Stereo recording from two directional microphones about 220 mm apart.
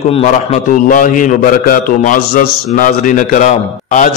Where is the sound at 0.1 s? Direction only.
30° left (ahead or behind).